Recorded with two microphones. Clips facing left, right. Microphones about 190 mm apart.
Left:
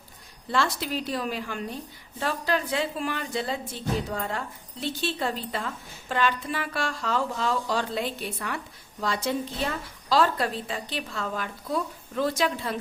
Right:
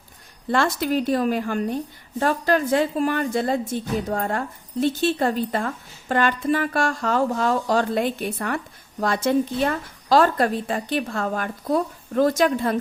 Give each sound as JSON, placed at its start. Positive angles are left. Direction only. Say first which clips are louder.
{"t": 0.5, "sound": "a woman's voice", "louder": "right 6 dB", "side_deg": -50}